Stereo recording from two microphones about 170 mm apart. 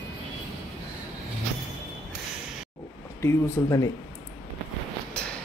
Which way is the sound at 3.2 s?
15° left (ahead or behind).